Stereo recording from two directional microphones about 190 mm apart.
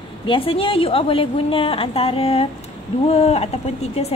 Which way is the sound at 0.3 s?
30° left (ahead or behind).